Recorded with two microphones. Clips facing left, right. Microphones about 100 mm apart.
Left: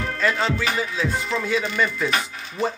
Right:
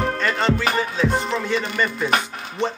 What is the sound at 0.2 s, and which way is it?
Music, 5° left (ahead or behind).